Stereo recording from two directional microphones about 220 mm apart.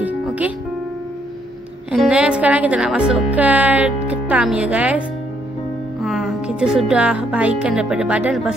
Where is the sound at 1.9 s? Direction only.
Centre (ahead or behind).